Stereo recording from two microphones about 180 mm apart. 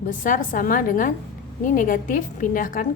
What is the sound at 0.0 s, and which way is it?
A woman's voice, 45° left (ahead or behind).